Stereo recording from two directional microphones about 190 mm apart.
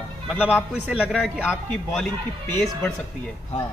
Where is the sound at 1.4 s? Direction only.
10° left (ahead or behind).